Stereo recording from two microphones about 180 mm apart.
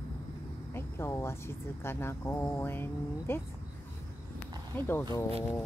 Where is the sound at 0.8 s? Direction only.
15° left (ahead or behind).